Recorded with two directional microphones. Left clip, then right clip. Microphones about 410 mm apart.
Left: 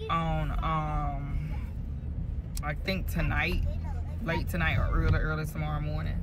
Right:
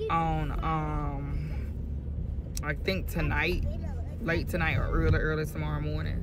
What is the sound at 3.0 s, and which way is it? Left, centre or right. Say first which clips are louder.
Speech: right 1 dB; centre.